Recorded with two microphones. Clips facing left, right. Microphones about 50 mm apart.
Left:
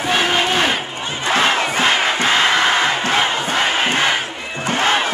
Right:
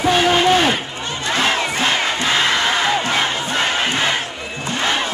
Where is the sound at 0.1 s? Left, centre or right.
Centre.